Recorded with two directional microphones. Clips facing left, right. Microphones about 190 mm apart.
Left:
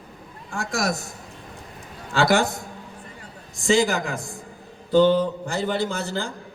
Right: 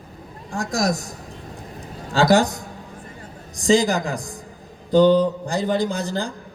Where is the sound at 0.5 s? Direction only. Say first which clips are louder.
Right 3 dB; 35° right (ahead or behind).